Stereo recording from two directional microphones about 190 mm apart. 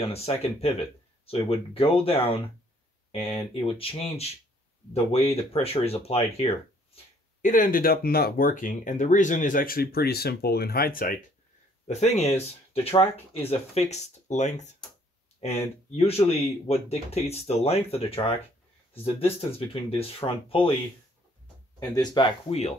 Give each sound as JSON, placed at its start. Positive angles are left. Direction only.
{"t": 0.0, "sound": "speech", "side_deg": 30}
{"t": 7.4, "sound": "speech", "side_deg": 45}
{"t": 11.9, "sound": "speech", "side_deg": 35}
{"t": 21.7, "sound": "speech", "side_deg": 20}